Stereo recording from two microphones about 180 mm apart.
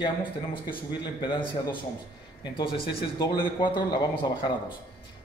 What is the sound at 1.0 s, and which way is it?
Speech, 25° left (ahead or behind).